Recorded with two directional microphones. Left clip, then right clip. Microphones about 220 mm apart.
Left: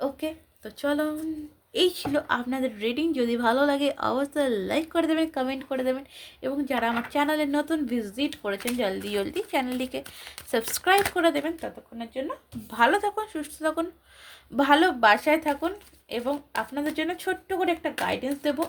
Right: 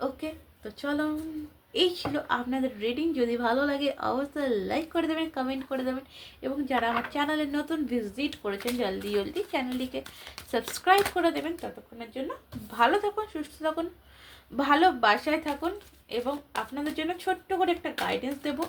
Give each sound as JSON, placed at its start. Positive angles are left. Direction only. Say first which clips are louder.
{"t": 0.0, "sound": "a woman's voice", "louder": "left 3 dB", "side_deg": 50}
{"t": 11.1, "sound": "a woman's voice", "louder": "left 3 dB", "side_deg": 50}
{"t": 12.7, "sound": "a woman's voice", "louder": "left 2 dB", "side_deg": 50}